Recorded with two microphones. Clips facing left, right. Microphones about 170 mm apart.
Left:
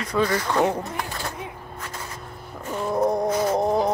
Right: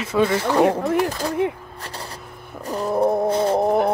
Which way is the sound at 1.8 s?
35° right (ahead or behind).